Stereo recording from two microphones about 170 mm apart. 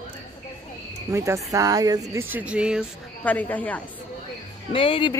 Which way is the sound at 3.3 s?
10° left (ahead or behind).